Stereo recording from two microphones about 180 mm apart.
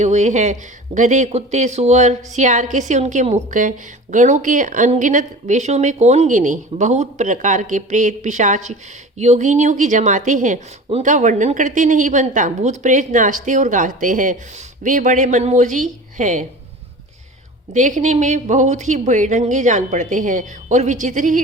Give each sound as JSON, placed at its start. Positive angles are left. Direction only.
{"t": 0.0, "sound": "speech", "side_deg": -40}
{"t": 17.7, "sound": "speech", "side_deg": -45}